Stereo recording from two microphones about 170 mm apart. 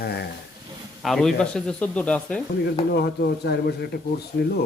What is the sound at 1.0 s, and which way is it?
Speech, 5° left (ahead or behind).